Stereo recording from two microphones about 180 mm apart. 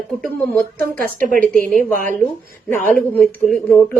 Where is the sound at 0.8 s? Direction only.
55° right (ahead or behind).